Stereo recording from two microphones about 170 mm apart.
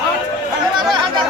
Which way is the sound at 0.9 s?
25° right (ahead or behind).